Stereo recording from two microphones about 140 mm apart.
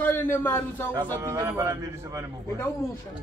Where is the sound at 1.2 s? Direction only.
25° right (ahead or behind).